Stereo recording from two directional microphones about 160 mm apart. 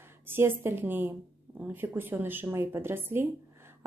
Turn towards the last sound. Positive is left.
turn(degrees=-15)  # may be behind; listen again after turning